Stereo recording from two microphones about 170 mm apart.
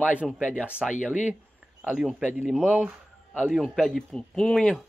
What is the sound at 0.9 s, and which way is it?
Speech, 45° left (ahead or behind).